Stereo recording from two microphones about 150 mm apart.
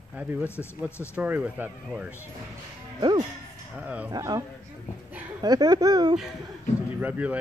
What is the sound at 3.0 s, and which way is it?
Speech, 30° right (ahead or behind).